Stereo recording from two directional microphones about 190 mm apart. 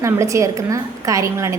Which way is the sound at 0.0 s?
15° right (ahead or behind).